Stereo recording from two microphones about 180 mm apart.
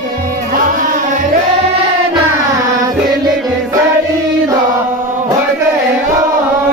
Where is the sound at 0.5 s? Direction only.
50° right (ahead or behind).